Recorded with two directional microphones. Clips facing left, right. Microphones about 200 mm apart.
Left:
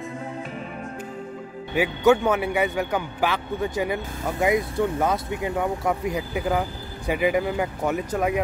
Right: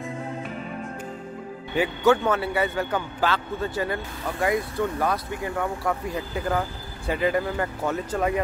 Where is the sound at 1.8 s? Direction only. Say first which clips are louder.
Left 2 dB; 10° left (ahead or behind).